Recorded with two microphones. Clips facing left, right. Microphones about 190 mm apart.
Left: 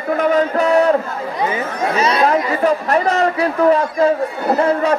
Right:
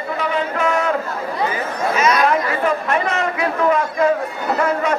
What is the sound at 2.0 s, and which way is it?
Chatter, 30° left (ahead or behind).